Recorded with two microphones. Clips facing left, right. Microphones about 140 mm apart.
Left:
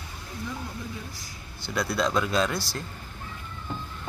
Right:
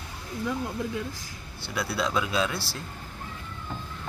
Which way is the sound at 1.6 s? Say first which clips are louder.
Left 2 dB; 5° right (ahead or behind).